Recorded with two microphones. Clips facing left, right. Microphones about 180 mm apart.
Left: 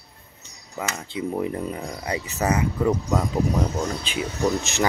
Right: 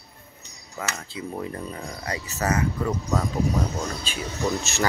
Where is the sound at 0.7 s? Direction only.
20° left (ahead or behind).